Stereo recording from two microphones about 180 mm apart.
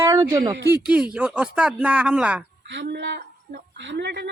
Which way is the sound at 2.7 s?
75° right (ahead or behind).